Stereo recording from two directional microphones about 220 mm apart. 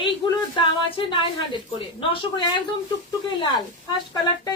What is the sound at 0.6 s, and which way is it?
A woman's voice, 25° left (ahead or behind).